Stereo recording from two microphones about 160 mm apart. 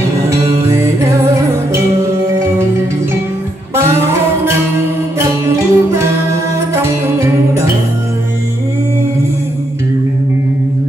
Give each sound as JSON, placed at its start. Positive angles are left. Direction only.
{"t": 0.3, "sound": "music", "side_deg": -15}
{"t": 3.7, "sound": "music", "side_deg": -15}
{"t": 5.2, "sound": "music", "side_deg": -15}